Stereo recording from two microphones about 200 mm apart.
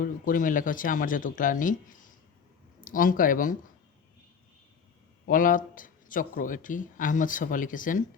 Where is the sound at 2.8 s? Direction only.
45° left (ahead or behind).